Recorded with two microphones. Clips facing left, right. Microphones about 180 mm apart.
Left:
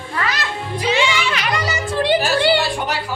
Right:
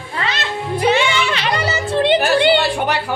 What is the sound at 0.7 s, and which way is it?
Music, 55° right (ahead or behind).